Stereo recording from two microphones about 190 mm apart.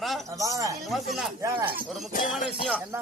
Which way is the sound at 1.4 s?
15° right (ahead or behind).